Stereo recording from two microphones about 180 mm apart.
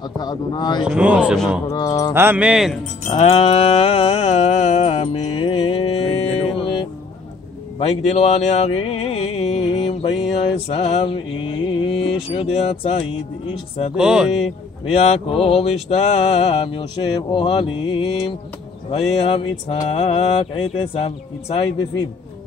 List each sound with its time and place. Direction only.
0.2 s mantra: 25° left (ahead or behind)
0.8 s speech: 5° right (ahead or behind)
1.7 s mantra: 20° left (ahead or behind)
2.1 s speech: 10° right (ahead or behind)
3.1 s a sound: 35° left (ahead or behind)
11.0 s speech: 30° left (ahead or behind)
13.9 s speech: 5° right (ahead or behind)
14.4 s speech: 35° left (ahead or behind)
17.3 s mantra: 30° left (ahead or behind)
18.9 s speech: 35° left (ahead or behind)